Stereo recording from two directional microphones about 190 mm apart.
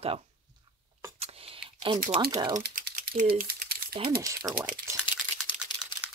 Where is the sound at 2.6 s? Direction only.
50° right (ahead or behind).